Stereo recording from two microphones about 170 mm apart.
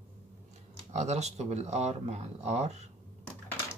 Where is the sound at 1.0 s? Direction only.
40° right (ahead or behind).